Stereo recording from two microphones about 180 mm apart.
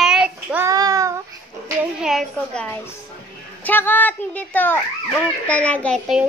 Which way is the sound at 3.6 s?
10° left (ahead or behind).